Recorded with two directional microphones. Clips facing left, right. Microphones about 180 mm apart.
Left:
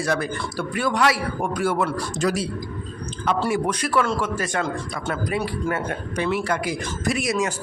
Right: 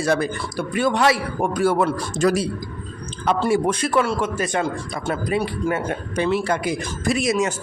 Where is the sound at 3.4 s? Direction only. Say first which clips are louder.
Right 5 dB; 25° right (ahead or behind).